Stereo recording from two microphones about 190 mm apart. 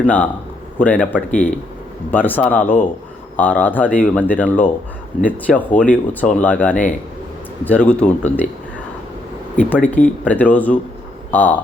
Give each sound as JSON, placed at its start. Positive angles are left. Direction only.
{"t": 0.0, "sound": "speech", "side_deg": 5}
{"t": 9.6, "sound": "speech", "side_deg": 10}